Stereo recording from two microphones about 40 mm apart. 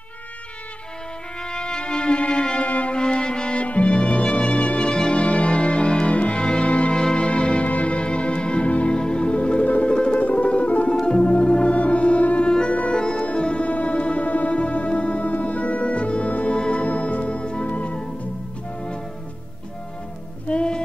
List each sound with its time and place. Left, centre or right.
1.5 s music: centre
2.6 s music: left
3.2 s music: centre
3.6 s music: left
4.0 s music: centre
5.1 s music: left
6.1 s music: left
6.4 s music: centre
7.0 s music: centre
7.6 s music: left
12.4 s music: left
16.5 s music: left
16.8 s music: left
20.4 s music: left